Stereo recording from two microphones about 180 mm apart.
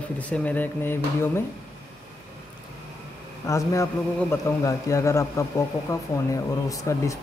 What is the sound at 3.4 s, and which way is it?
A man's voice, 15° left (ahead or behind).